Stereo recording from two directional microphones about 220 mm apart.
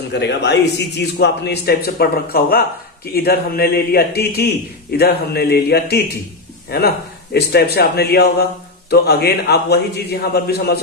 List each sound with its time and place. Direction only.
0.1 s a man's voice: 50° left (ahead or behind)